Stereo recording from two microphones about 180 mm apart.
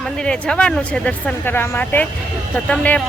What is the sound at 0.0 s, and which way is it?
Speech, 5° left (ahead or behind).